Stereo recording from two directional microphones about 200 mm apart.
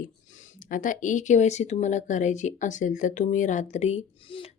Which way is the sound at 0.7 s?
40° left (ahead or behind).